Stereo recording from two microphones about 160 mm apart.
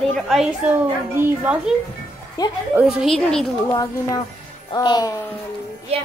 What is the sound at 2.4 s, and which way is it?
Speech, 25° left (ahead or behind).